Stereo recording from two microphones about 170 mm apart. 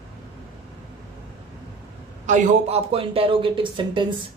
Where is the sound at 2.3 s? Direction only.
40° right (ahead or behind).